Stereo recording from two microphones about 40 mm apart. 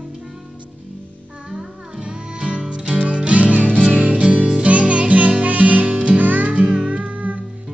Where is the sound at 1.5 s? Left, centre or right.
Centre; by 7.4 s right.